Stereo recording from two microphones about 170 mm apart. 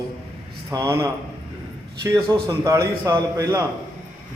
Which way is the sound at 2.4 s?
20° right (ahead or behind).